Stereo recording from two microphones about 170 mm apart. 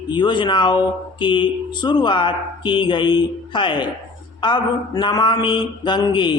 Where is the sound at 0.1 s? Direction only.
25° left (ahead or behind).